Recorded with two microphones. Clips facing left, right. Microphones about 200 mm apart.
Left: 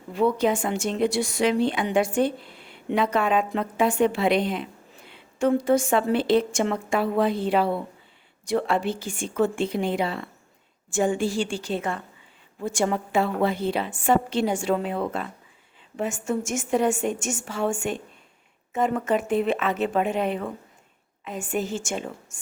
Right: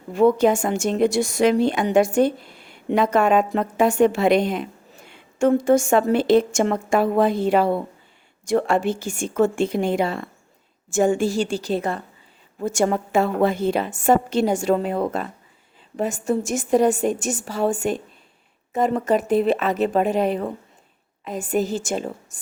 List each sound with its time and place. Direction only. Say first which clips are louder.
0.1 s a woman's voice: right 5 dB; 45° right (ahead or behind)